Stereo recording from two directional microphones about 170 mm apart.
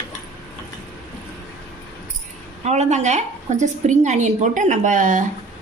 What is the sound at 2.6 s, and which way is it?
A woman's voice, 40° right (ahead or behind).